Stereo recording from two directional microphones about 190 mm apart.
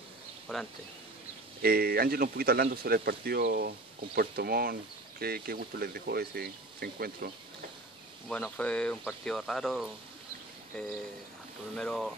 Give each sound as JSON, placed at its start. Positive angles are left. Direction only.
{"t": 0.5, "sound": "speech", "side_deg": 5}
{"t": 1.6, "sound": "speech", "side_deg": -50}
{"t": 8.3, "sound": "speech", "side_deg": 5}